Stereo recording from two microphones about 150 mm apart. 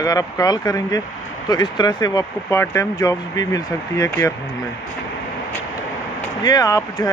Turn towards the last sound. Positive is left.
turn(degrees=25)  # may be behind; listen again after turning